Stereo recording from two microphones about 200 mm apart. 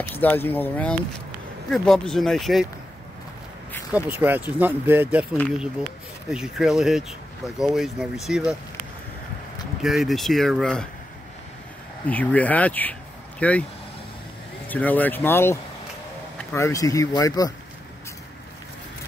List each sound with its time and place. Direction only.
0.1 s speech: 10° left (ahead or behind)
3.9 s speech: 10° right (ahead or behind)
9.8 s speech: centre (ahead or behind)
12.1 s speech: 5° left (ahead or behind)
14.7 s speech: 10° left (ahead or behind)